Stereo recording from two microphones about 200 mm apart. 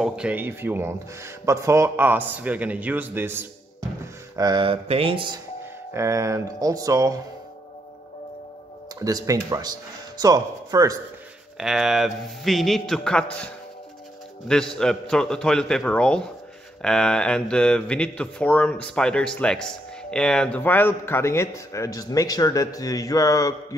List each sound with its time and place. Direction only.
0.0 s speech: 5° right (ahead or behind)
4.4 s a man's voice: 20° right (ahead or behind)
5.9 s speech: 15° right (ahead or behind)
9.0 s a man's voice: 15° right (ahead or behind)
11.5 s speech: centre (ahead or behind)
14.5 s speech: 5° left (ahead or behind)